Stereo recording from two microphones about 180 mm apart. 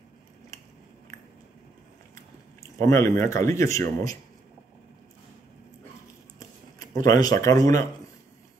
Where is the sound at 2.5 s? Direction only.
15° left (ahead or behind).